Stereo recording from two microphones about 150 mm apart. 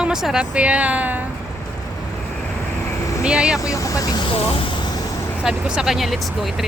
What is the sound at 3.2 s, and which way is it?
Speech, 5° right (ahead or behind).